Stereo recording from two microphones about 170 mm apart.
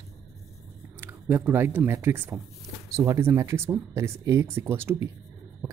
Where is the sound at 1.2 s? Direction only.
10° right (ahead or behind).